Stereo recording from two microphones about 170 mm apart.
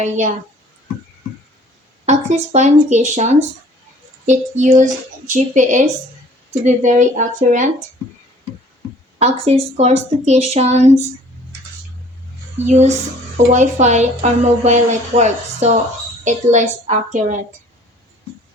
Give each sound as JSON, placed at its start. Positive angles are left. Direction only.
{"t": 2.0, "sound": "a woman's voice", "side_deg": -40}
{"t": 9.1, "sound": "speech", "side_deg": -35}
{"t": 13.3, "sound": "a woman's voice", "side_deg": -45}